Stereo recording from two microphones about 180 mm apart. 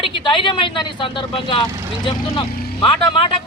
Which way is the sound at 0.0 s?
30° left (ahead or behind).